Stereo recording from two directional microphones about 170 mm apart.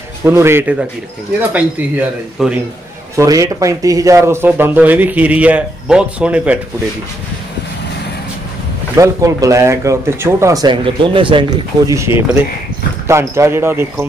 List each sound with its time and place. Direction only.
0.2 s speech: 15° right (ahead or behind)
3.2 s speech: 20° right (ahead or behind)
8.9 s speech: 20° right (ahead or behind)
13.0 s speech: 15° right (ahead or behind)